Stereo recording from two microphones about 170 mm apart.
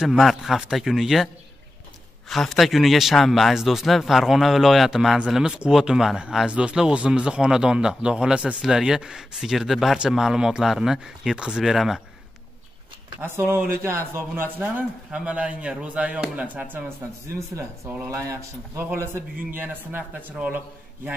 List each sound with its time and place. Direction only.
0.0 s speech: centre (ahead or behind)
13.2 s a man's voice: 10° right (ahead or behind)